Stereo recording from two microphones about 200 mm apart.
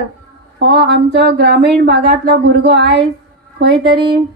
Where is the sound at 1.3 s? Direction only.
55° right (ahead or behind).